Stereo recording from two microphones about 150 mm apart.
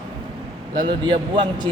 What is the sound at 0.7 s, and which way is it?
Speech, 30° right (ahead or behind).